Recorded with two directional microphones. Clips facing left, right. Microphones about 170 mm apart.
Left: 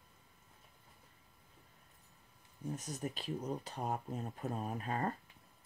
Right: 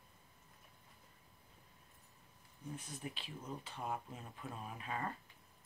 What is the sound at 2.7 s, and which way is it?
Speech, 45° left (ahead or behind).